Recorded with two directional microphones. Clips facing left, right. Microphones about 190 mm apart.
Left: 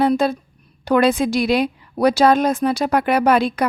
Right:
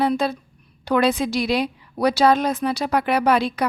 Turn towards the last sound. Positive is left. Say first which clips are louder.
# left 3 dB
turn(degrees=50)  # may be behind; listen again after turning